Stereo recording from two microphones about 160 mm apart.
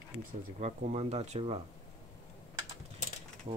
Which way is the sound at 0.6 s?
45° right (ahead or behind).